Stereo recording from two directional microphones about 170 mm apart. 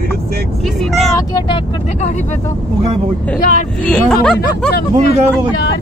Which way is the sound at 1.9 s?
40° left (ahead or behind).